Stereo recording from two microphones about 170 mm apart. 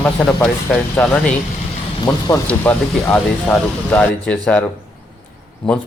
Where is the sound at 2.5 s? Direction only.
10° left (ahead or behind).